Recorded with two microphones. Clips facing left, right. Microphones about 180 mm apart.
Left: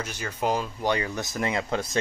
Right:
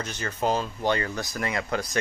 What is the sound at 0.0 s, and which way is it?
Speech, 10° left (ahead or behind).